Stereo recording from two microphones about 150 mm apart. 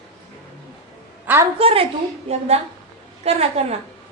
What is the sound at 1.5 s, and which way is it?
Speech, 40° right (ahead or behind).